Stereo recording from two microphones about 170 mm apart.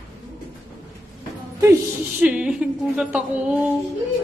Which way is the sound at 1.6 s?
15° right (ahead or behind).